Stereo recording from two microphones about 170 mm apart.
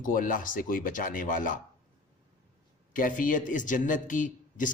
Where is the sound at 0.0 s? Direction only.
55° left (ahead or behind).